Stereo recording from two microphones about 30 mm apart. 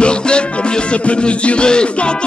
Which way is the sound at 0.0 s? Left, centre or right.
Left.